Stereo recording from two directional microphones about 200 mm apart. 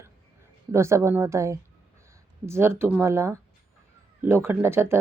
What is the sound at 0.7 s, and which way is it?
Speech, 15° right (ahead or behind).